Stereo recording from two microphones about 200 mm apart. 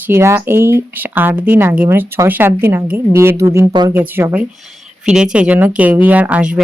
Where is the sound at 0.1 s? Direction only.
10° right (ahead or behind).